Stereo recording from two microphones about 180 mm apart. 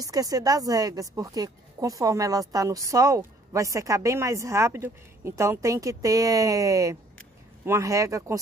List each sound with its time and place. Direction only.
0.0 s speech: 20° right (ahead or behind)